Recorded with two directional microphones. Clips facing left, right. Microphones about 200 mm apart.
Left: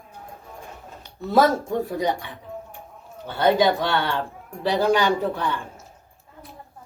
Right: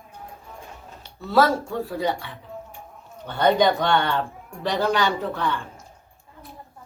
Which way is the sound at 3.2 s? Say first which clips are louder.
Even; 5° left (ahead or behind).